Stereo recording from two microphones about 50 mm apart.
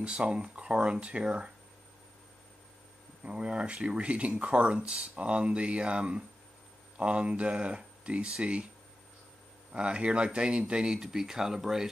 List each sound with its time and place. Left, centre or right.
0.0 s speech: right
3.3 s speech: right
9.7 s speech: right